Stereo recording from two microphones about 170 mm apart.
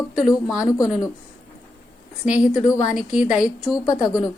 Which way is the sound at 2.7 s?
5° right (ahead or behind).